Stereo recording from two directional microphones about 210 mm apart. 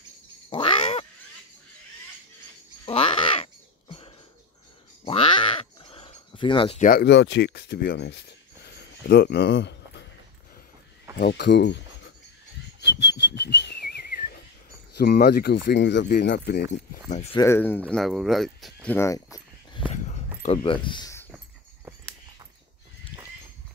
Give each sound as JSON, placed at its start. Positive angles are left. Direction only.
{"t": 0.5, "sound": "a sound", "side_deg": 25}
{"t": 2.8, "sound": "crow", "side_deg": 25}
{"t": 5.0, "sound": "crow", "side_deg": 25}
{"t": 6.8, "sound": "speech", "side_deg": 45}
{"t": 8.6, "sound": "a sound", "side_deg": 50}
{"t": 11.1, "sound": "speech", "side_deg": 50}
{"t": 13.0, "sound": "whistling", "side_deg": 55}
{"t": 15.0, "sound": "speech", "side_deg": 50}
{"t": 17.1, "sound": "speech", "side_deg": 30}
{"t": 17.4, "sound": "speech", "side_deg": 10}
{"t": 19.9, "sound": "a sound", "side_deg": 30}
{"t": 20.5, "sound": "speech", "side_deg": 25}